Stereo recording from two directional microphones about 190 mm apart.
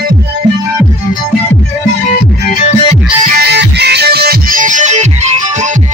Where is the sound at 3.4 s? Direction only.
60° right (ahead or behind).